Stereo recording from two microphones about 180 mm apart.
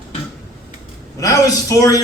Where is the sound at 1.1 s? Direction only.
20° left (ahead or behind).